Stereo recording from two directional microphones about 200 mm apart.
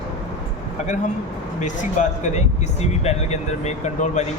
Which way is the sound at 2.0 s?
40° left (ahead or behind).